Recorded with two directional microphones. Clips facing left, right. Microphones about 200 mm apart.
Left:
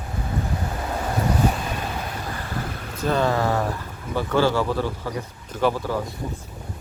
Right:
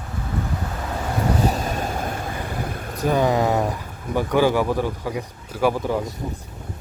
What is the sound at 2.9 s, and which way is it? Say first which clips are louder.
Speech: right 2 dB; 15° right (ahead or behind).